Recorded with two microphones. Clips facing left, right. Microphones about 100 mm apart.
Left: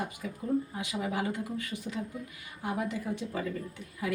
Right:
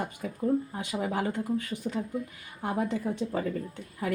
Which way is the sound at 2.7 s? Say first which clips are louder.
Right 5 dB; 30° right (ahead or behind).